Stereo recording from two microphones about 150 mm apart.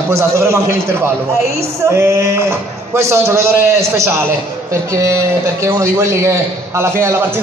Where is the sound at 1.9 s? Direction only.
15° right (ahead or behind).